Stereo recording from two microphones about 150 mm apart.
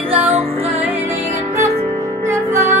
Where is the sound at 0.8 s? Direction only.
15° right (ahead or behind).